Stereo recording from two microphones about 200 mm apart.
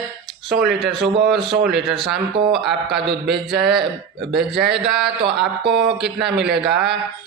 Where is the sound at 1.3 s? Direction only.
Centre (ahead or behind).